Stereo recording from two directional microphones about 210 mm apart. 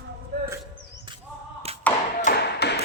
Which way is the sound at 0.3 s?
50° right (ahead or behind).